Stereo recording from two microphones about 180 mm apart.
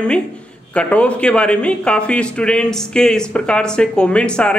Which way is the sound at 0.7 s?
5° left (ahead or behind).